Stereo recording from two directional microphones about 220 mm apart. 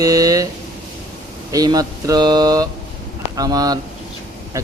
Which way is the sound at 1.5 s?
15° right (ahead or behind).